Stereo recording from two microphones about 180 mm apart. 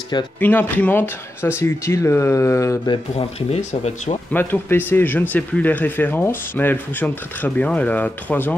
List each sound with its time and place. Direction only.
0.4 s speech: 10° left (ahead or behind)
3.2 s speech: 35° left (ahead or behind)
4.3 s speech: 10° left (ahead or behind)